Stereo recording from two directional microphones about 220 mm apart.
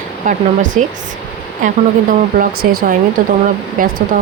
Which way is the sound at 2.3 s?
40° right (ahead or behind).